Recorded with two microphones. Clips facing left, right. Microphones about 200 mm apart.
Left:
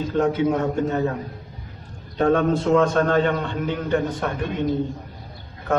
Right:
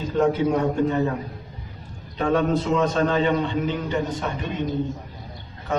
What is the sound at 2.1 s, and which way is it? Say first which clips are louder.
A man's voice: left 2 dB; 50° left (ahead or behind).